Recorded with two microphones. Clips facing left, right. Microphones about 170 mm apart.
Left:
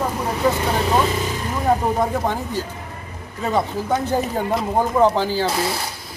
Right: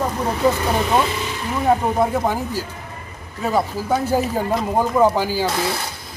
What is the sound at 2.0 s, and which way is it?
Speech, 10° right (ahead or behind).